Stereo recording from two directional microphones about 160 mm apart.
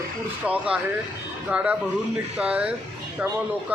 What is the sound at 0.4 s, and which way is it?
A man's voice, 10° right (ahead or behind).